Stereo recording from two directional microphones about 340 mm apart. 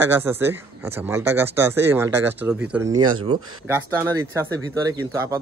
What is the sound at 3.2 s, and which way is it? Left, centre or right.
Speech, centre.